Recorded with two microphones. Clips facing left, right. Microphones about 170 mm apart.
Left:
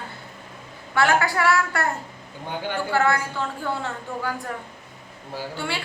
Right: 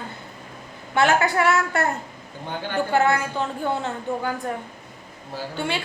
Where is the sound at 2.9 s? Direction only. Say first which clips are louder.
Right 1 dB; 20° right (ahead or behind).